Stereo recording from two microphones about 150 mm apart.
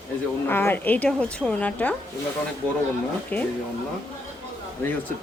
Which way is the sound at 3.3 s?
10° left (ahead or behind).